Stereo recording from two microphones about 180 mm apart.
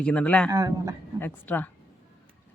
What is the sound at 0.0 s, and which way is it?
Speech, 5° left (ahead or behind).